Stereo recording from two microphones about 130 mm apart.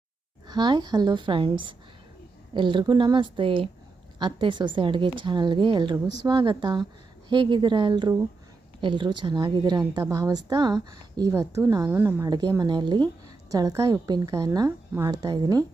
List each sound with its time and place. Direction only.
0.4 s a woman's voice: 35° right (ahead or behind)
12.3 s a woman's voice: 30° right (ahead or behind)